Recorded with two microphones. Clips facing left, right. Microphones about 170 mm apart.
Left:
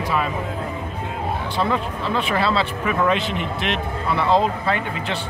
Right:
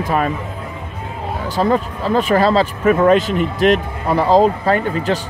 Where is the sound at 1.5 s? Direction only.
40° right (ahead or behind).